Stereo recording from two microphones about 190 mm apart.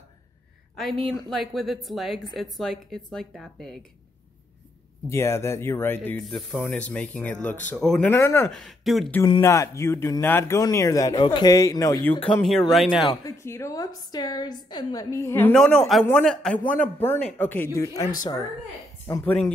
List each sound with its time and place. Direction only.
0.7 s a woman's voice: centre (ahead or behind)
5.1 s a man's voice: 15° left (ahead or behind)
8.5 s a woman's voice: centre (ahead or behind)
9.4 s a man's voice: 15° left (ahead or behind)
16.7 s speech: 45° left (ahead or behind)
17.1 s a man's voice: 10° left (ahead or behind)